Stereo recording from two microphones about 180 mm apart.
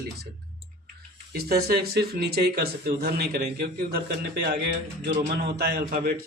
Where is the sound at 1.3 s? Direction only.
60° right (ahead or behind).